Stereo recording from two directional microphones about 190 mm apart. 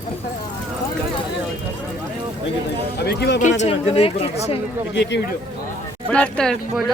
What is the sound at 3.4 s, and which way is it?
Speech, 35° left (ahead or behind).